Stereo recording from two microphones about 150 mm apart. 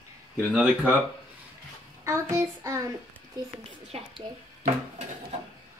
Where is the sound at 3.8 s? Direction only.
40° right (ahead or behind).